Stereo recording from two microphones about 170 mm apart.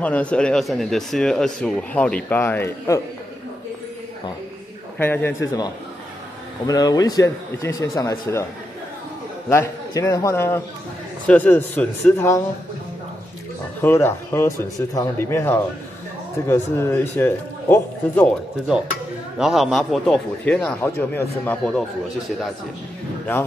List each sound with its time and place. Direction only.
0.0 s speech: 10° left (ahead or behind)
4.9 s speech: 10° left (ahead or behind)
6.7 s speech: 20° left (ahead or behind)
9.5 s speech: 15° left (ahead or behind)
13.7 s speech: 15° left (ahead or behind)
19.3 s speech: centre (ahead or behind)